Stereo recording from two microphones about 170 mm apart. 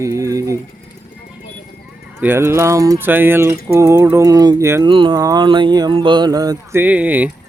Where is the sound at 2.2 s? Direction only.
15° right (ahead or behind).